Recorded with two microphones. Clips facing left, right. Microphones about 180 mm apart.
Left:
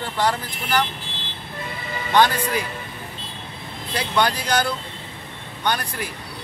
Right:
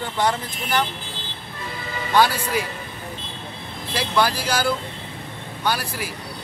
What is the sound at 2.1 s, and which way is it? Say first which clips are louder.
Speech: left 1 dB; 5° right (ahead or behind).